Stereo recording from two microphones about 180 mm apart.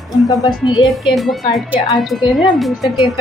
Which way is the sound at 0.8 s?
Centre (ahead or behind).